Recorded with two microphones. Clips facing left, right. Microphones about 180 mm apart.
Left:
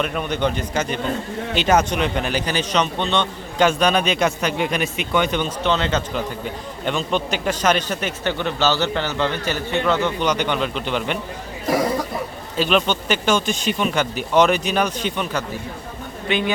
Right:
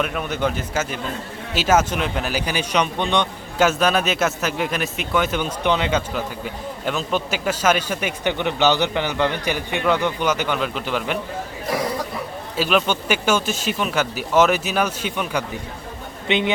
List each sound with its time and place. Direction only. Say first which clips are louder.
0.0 s a man's voice: left 1 dB; 5° right (ahead or behind)
12.5 s a man's voice: left 1 dB; 5° right (ahead or behind)
16.3 s a man's voice: right 1 dB; 20° right (ahead or behind)